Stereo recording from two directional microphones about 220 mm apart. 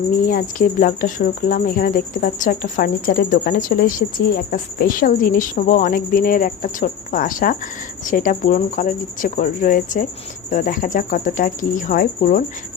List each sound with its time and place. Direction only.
0.3 s speech: 40° left (ahead or behind)